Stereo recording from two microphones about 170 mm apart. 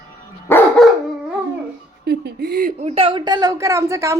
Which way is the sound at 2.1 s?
65° right (ahead or behind).